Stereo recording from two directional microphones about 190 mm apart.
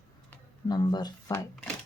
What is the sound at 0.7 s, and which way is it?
Speech, 20° left (ahead or behind).